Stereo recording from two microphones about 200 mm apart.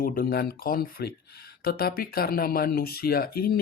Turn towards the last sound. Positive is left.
turn(degrees=50)  # may be behind; listen again after turning